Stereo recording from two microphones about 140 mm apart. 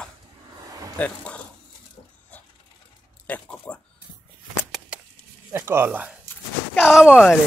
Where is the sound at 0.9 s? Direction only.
10° left (ahead or behind).